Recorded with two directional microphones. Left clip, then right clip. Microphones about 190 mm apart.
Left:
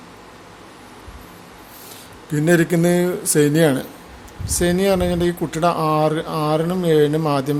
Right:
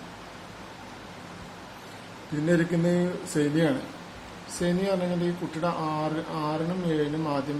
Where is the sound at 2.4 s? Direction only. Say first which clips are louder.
Left 9 dB; 65° left (ahead or behind).